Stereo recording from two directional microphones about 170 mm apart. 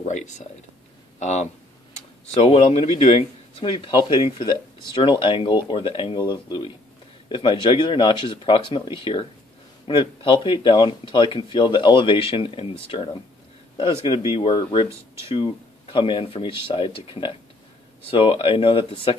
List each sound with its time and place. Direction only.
0.0 s speech: 45° left (ahead or behind)
14.3 s speech: 30° left (ahead or behind)